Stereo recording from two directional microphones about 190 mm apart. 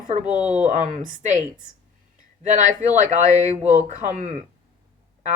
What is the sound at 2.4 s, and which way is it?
Speech, 40° right (ahead or behind).